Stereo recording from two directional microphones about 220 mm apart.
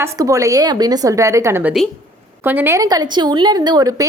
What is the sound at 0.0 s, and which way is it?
A woman's voice, 15° right (ahead or behind).